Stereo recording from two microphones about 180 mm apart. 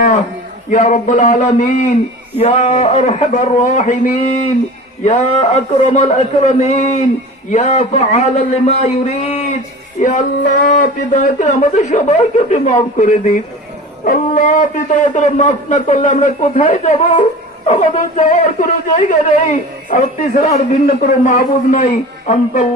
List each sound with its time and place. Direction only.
0.7 s a man's voice: 40° left (ahead or behind)
14.0 s a man's voice: 50° left (ahead or behind)